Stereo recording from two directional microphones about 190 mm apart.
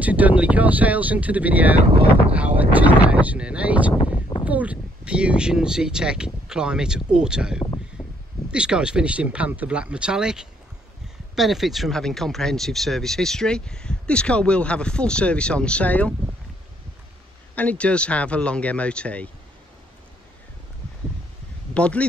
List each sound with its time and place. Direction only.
0.0 s speech: 10° right (ahead or behind)
1.9 s speech: 30° right (ahead or behind)
2.7 s speech: 10° right (ahead or behind)
4.0 s a sound: 25° left (ahead or behind)
4.5 s speech: 5° right (ahead or behind)
8.0 s a sound: 20° left (ahead or behind)
8.5 s speech: 5° right (ahead or behind)
17.6 s speech: 5° left (ahead or behind)
21.7 s speech: 5° left (ahead or behind)